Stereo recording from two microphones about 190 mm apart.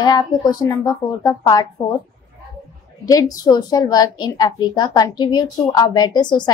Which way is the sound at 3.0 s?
20° left (ahead or behind).